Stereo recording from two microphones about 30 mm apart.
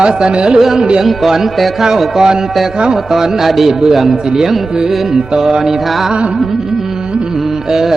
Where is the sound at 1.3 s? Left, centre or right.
Centre.